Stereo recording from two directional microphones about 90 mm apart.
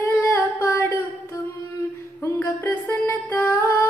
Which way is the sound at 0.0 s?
30° left (ahead or behind).